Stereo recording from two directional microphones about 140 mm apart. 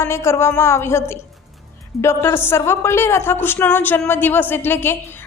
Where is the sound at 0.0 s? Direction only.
20° left (ahead or behind).